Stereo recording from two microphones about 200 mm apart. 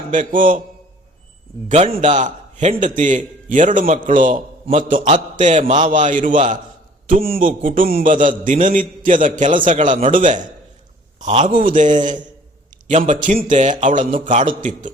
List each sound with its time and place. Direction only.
0.1 s a man's voice: 40° right (ahead or behind)
1.6 s a man's voice: 35° right (ahead or behind)
11.2 s a man's voice: 30° right (ahead or behind)
11.6 s a man's voice: 40° right (ahead or behind)